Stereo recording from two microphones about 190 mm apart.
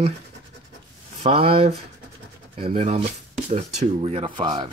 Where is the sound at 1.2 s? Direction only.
30° right (ahead or behind).